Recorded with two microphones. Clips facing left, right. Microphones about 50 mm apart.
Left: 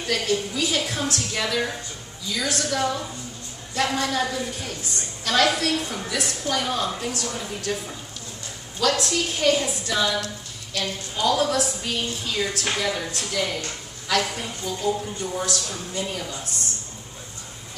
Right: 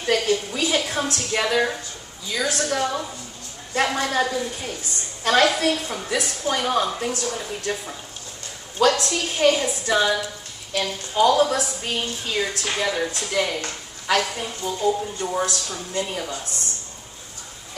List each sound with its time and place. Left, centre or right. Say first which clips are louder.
0.0 s a woman's voice: right 3 dB; right
5.2 s a woman's voice: right 3 dB; right
8.7 s a woman's voice: right 3 dB; right
13.6 s a sound: right 2 dB; right
14.3 s a woman's voice: right 2 dB; centre
15.1 s speech: right 3 dB; right